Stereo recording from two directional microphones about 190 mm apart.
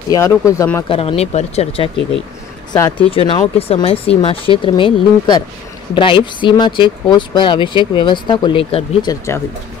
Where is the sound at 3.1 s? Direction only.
30° left (ahead or behind).